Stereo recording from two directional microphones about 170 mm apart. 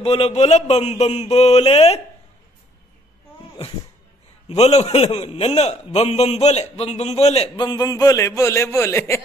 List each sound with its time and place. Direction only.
0.0 s a man's voice: 35° left (ahead or behind)
4.5 s a man's voice: 40° left (ahead or behind); by 9.2 s 15° left (ahead or behind)